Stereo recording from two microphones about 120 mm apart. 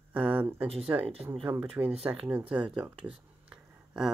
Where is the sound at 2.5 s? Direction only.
10° right (ahead or behind).